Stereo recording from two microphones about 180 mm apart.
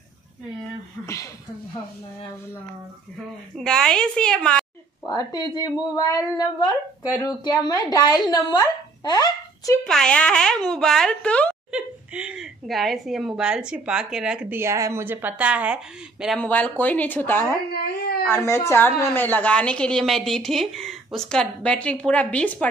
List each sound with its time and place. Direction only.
1.0 s a woman's voice: 15° left (ahead or behind)
3.5 s speech: 5° left (ahead or behind)
5.0 s speech: 20° left (ahead or behind)
9.8 s speech: 5° left (ahead or behind)
11.7 s speech: 5° right (ahead or behind)
16.4 s a woman's voice: 10° left (ahead or behind)